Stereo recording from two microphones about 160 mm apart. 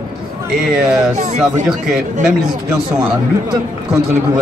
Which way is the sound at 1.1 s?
50° right (ahead or behind).